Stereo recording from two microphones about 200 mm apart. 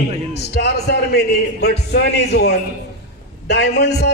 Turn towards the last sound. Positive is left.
turn(degrees=55)  # may be behind; listen again after turning